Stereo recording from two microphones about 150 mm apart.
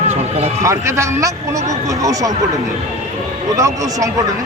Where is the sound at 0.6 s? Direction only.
20° right (ahead or behind).